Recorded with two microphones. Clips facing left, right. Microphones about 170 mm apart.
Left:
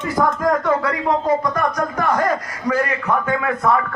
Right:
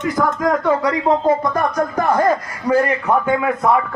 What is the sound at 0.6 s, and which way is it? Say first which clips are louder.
Speech: right 2 dB; 15° right (ahead or behind).